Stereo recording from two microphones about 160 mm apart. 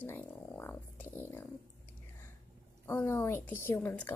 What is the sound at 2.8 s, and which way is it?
A woman's voice, 15° left (ahead or behind).